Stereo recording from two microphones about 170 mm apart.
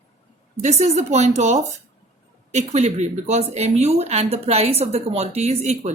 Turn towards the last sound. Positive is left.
turn(degrees=-40)  # may be behind; listen again after turning